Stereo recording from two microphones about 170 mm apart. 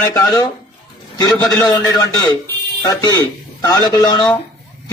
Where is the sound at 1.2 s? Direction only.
25° left (ahead or behind).